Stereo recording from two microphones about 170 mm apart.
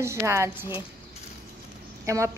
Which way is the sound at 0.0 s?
15° right (ahead or behind).